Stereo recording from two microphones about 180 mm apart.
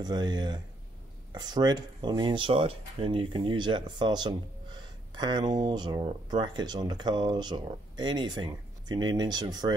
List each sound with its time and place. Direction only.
0.0 s speech: 25° right (ahead or behind)